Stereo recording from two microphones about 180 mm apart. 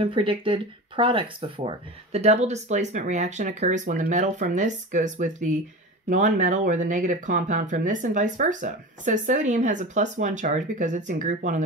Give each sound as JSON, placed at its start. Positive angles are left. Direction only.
{"t": 0.0, "sound": "speech", "side_deg": -30}